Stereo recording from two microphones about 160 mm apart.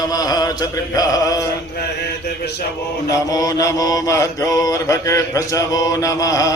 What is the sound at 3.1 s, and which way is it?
Mantra, 25° left (ahead or behind).